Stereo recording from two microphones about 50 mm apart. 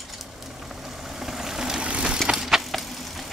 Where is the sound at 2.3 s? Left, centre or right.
Centre.